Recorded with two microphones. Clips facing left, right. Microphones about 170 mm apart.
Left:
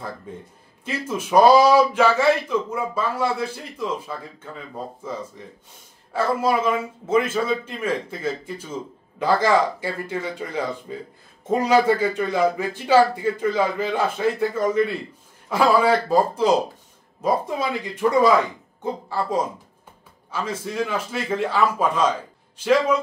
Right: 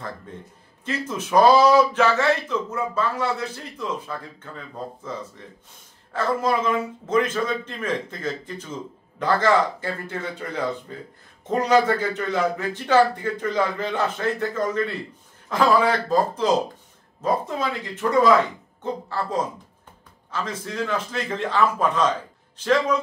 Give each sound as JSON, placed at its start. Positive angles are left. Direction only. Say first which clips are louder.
{"t": 0.3, "sound": "speech", "louder": "left 3 dB", "side_deg": 10}
{"t": 6.1, "sound": "speech", "louder": "left 2 dB", "side_deg": 10}